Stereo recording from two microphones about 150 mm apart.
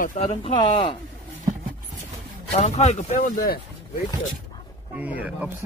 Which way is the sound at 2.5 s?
45° left (ahead or behind).